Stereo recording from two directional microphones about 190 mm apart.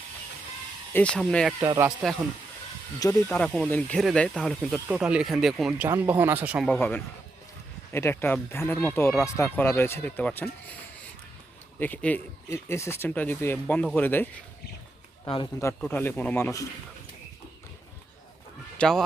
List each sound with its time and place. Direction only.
0.9 s speech: 5° left (ahead or behind)
1.5 s speech: 15° right (ahead or behind)
3.0 s speech: 15° left (ahead or behind); by 6.7 s 5° right (ahead or behind)
6.7 s speech: 10° left (ahead or behind)
11.8 s speech: 10° left (ahead or behind)
15.2 s a man's voice: 25° left (ahead or behind)
15.8 s speech: 10° left (ahead or behind)
18.8 s speech: 5° left (ahead or behind)